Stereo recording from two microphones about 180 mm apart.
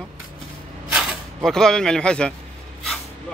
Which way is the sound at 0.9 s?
Centre (ahead or behind).